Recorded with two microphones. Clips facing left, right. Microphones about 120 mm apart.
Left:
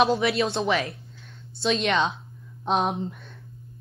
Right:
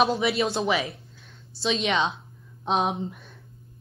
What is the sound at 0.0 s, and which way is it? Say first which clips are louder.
A woman's voice: left 1 dB; centre (ahead or behind).